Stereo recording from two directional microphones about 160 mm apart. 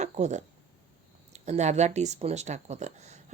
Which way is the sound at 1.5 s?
45° right (ahead or behind).